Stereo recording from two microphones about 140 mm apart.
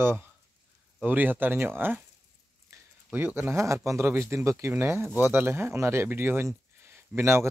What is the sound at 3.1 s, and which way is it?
Speech, 15° right (ahead or behind).